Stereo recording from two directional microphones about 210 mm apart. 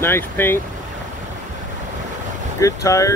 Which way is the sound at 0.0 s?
10° left (ahead or behind).